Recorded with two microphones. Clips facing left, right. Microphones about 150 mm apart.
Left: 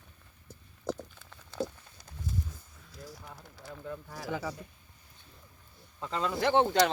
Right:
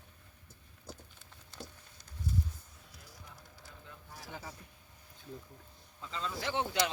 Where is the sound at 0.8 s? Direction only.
85° left.